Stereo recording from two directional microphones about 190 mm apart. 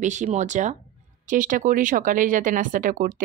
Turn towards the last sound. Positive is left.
turn(degrees=-45)  # may be behind; listen again after turning